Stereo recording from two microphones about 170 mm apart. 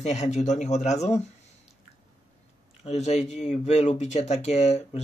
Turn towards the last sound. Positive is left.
turn(degrees=40)  # may be behind; listen again after turning